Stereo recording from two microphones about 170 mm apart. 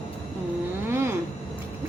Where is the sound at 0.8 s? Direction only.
15° right (ahead or behind).